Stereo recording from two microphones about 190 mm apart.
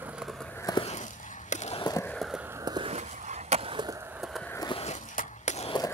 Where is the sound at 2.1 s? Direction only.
Centre (ahead or behind); by 2.9 s 20° right (ahead or behind).